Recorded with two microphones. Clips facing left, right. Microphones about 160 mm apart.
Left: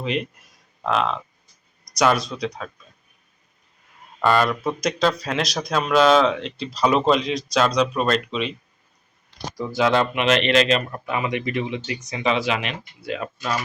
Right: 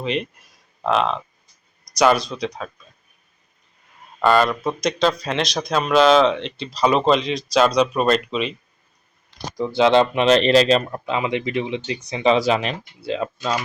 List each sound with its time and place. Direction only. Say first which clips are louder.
0.0 s speech: right 1 dB; 5° left (ahead or behind)
4.2 s speech: right 2 dB; 5° left (ahead or behind)
9.6 s speech: right 4 dB; 25° right (ahead or behind)
11.0 s speech: right 2 dB; 20° right (ahead or behind)
12.0 s speech: right 6 dB; 30° right (ahead or behind)
13.1 s speech: right 3 dB; 25° right (ahead or behind)